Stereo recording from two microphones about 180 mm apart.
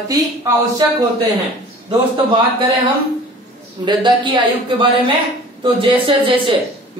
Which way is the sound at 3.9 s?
25° right (ahead or behind).